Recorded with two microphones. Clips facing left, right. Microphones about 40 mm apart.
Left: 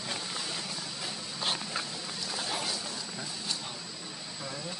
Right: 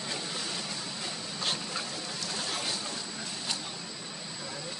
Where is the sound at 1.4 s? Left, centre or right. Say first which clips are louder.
Left 1 dB; centre.